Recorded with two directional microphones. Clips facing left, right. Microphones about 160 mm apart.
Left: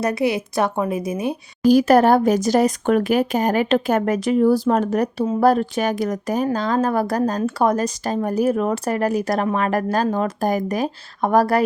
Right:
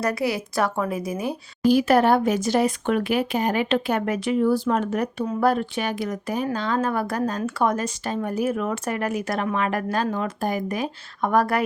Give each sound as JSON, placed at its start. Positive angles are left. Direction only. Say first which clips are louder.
{"t": 0.0, "sound": "a woman's voice", "louder": "left 4 dB", "side_deg": 20}
{"t": 1.6, "sound": "a woman's voice", "louder": "left 4 dB", "side_deg": 40}